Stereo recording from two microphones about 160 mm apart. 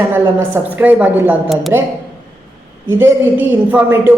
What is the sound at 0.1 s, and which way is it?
A woman's voice, 15° right (ahead or behind).